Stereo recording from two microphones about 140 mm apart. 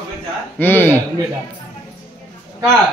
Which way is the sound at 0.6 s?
15° left (ahead or behind).